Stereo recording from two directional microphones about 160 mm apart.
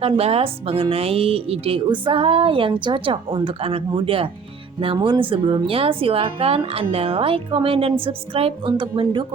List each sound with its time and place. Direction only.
0.0 s a woman's voice: 40° right (ahead or behind)